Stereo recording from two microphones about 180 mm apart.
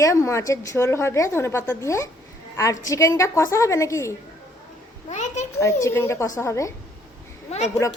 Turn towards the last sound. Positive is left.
turn(degrees=40)  # may be behind; listen again after turning